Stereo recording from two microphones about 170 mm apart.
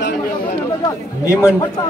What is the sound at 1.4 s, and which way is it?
Speech, 15° left (ahead or behind).